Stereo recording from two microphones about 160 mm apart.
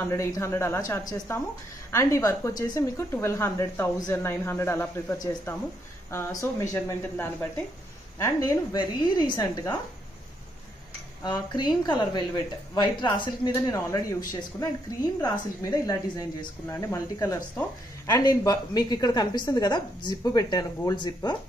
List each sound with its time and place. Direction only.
0.0 s a woman's voice: 15° left (ahead or behind)
9.4 s speech: 15° left (ahead or behind)
11.2 s a woman's voice: 25° left (ahead or behind)